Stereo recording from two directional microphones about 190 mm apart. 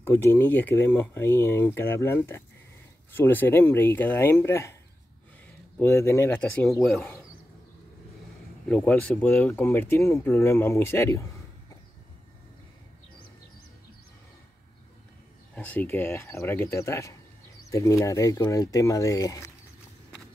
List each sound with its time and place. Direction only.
0.0 s speech: 15° left (ahead or behind)
5.8 s speech: 15° left (ahead or behind)
8.6 s speech: 5° left (ahead or behind)
15.5 s speech: 5° left (ahead or behind)